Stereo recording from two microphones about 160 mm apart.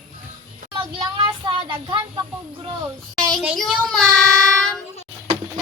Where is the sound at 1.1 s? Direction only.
30° right (ahead or behind).